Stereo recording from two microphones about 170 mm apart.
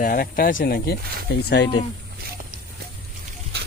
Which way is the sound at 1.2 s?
85° left.